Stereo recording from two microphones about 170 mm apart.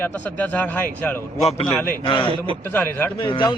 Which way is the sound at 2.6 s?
10° left (ahead or behind).